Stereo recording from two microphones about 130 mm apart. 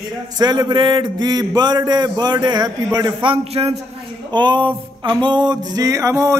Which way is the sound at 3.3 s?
50° right (ahead or behind).